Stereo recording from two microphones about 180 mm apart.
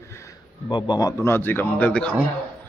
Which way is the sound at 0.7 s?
25° left (ahead or behind).